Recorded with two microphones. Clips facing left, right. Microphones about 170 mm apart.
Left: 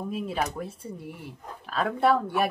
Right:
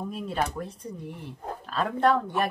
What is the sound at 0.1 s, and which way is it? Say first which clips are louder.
Speech: left 1 dB; 5° left (ahead or behind).